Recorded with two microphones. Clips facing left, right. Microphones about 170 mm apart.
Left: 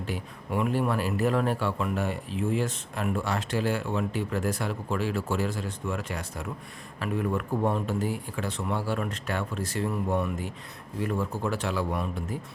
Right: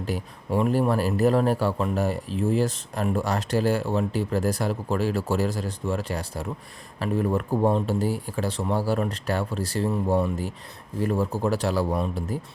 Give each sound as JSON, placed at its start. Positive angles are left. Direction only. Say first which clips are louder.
{"t": 0.0, "sound": "a man's voice", "louder": "right 4 dB", "side_deg": -35}